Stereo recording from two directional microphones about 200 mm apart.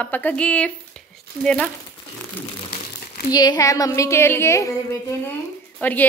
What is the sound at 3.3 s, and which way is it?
A woman's voice, 20° left (ahead or behind).